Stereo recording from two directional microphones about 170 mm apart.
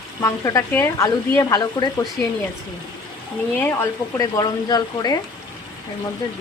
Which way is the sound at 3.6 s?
15° left (ahead or behind).